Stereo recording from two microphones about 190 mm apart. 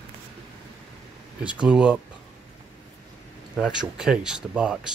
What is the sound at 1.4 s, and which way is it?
Speech, 5° right (ahead or behind).